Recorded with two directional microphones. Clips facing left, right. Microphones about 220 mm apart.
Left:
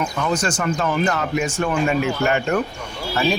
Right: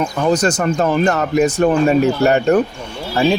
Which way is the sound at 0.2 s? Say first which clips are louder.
Right 8 dB; 35° right (ahead or behind).